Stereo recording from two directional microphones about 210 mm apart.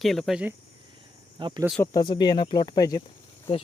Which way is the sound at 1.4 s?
20° right (ahead or behind).